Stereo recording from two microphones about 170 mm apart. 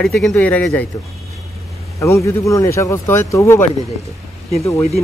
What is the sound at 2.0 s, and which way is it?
Speech, 15° left (ahead or behind).